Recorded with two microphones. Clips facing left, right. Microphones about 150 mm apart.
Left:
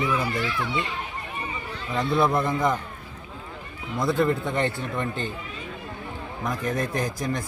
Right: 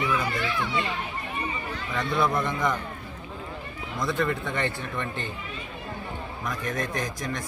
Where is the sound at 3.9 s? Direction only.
30° left (ahead or behind).